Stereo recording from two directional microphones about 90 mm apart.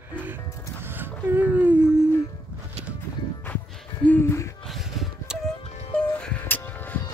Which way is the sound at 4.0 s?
25° left (ahead or behind).